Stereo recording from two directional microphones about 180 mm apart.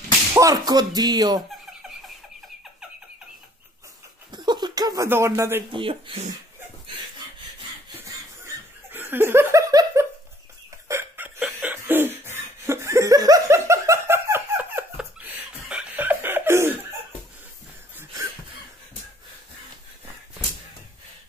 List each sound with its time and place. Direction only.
0.3 s speech: 20° right (ahead or behind)
4.3 s a sound: 25° right (ahead or behind)
5.7 s speech: 30° right (ahead or behind)
8.9 s laughter: 10° right (ahead or behind)
10.9 s chuckle: 10° right (ahead or behind)
17.9 s laughter: 15° right (ahead or behind)